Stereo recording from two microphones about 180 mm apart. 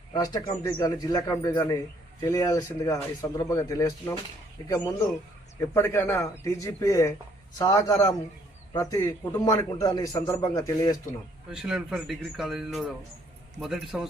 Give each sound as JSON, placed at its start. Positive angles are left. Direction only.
{"t": 0.1, "sound": "a man's voice", "side_deg": 20}
{"t": 5.5, "sound": "a man's voice", "side_deg": 15}
{"t": 11.5, "sound": "a man's voice", "side_deg": -5}